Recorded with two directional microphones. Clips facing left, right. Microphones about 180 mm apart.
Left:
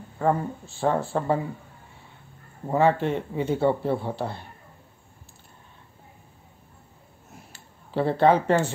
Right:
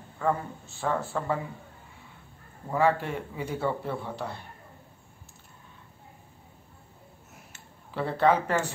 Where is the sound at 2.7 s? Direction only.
25° left (ahead or behind).